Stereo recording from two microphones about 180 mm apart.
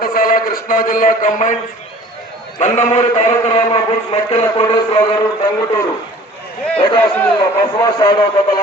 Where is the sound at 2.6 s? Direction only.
40° left (ahead or behind).